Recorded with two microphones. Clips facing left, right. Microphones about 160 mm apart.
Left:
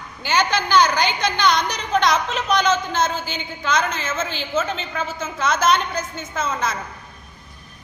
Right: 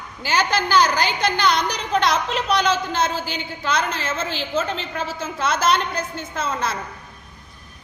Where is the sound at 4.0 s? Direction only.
35° right (ahead or behind).